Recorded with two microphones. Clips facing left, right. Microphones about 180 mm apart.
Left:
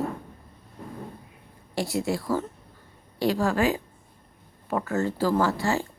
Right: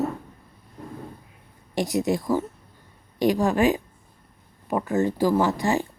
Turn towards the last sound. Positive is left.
turn(degrees=-15)  # may be behind; listen again after turning